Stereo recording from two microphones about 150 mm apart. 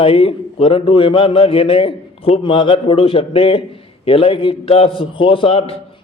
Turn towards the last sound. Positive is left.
turn(degrees=40)  # may be behind; listen again after turning